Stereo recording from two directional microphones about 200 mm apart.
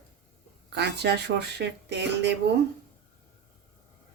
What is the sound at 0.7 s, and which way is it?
Speech, 55° right (ahead or behind).